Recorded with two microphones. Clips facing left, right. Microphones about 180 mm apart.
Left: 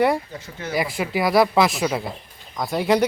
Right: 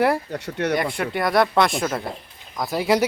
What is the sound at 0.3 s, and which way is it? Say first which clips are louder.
Speech: right 6 dB; 70° right (ahead or behind).